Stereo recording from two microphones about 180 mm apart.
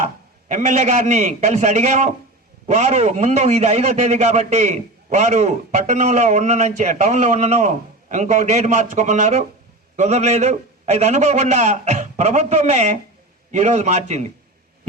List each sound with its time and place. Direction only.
0.4 s a man's voice: 40° right (ahead or behind)